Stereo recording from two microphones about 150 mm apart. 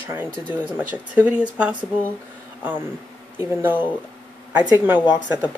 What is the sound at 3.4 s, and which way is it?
Speech, 15° right (ahead or behind).